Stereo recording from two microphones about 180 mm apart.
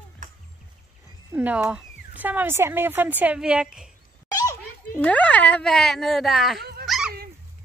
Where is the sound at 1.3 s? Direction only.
10° right (ahead or behind).